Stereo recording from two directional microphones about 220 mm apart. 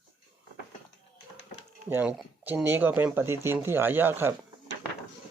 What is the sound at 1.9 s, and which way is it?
Speech, 10° right (ahead or behind).